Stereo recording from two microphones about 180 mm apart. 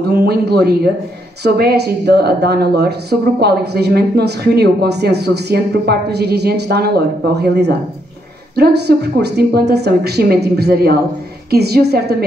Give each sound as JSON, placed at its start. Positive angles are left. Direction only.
{"t": 0.1, "sound": "speech", "side_deg": -60}